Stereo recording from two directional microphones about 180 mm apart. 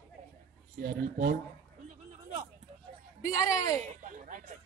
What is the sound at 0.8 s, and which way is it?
Speech, 55° right (ahead or behind).